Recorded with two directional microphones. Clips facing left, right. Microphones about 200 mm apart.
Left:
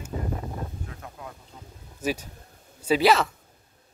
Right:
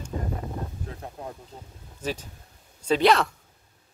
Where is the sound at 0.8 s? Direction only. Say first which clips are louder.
Right 4 dB; 35° right (ahead or behind).